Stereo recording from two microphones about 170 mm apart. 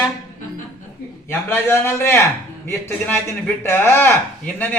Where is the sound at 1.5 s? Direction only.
15° left (ahead or behind).